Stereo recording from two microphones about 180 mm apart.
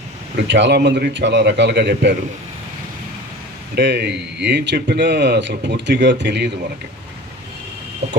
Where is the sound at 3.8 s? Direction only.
70° right (ahead or behind).